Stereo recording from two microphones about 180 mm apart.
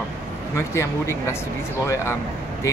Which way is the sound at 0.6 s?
15° left (ahead or behind).